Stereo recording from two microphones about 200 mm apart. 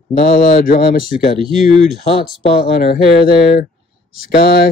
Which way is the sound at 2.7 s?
50° left (ahead or behind).